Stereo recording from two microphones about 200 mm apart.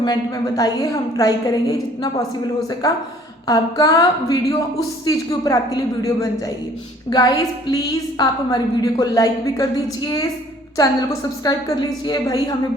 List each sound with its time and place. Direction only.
0.0 s a woman's voice: 20° left (ahead or behind)